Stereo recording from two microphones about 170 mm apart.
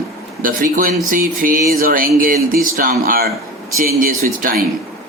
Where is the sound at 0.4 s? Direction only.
55° right (ahead or behind).